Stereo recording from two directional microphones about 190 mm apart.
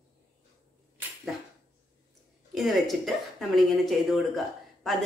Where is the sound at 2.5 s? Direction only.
Centre (ahead or behind).